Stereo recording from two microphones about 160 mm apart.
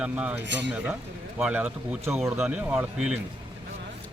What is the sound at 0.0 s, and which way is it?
Speech, 5° right (ahead or behind).